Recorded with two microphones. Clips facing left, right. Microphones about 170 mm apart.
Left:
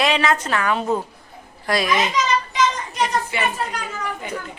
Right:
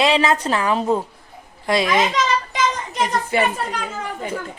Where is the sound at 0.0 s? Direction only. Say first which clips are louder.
Right 2 dB; 30° right (ahead or behind).